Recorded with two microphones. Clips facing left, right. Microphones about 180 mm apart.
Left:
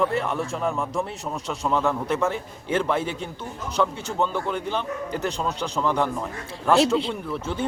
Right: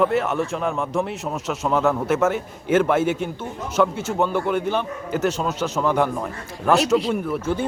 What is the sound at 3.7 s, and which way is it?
A man's voice, 5° right (ahead or behind).